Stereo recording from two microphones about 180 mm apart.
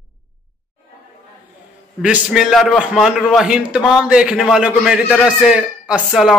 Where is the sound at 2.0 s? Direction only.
5° right (ahead or behind).